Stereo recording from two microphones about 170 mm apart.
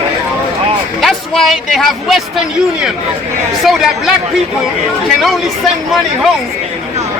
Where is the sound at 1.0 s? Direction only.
Centre (ahead or behind).